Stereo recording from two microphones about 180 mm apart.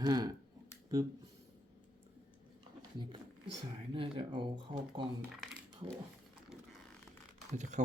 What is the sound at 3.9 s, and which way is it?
Speech, 25° right (ahead or behind).